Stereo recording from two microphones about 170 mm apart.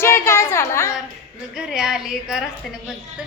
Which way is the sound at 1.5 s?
5° right (ahead or behind).